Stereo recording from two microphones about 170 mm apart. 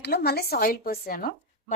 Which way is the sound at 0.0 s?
70° left (ahead or behind).